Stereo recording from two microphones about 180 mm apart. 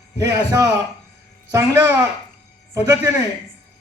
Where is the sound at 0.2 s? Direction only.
15° right (ahead or behind).